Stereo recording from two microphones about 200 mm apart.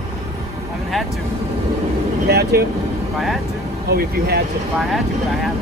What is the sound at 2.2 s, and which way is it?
Speech, 55° right (ahead or behind).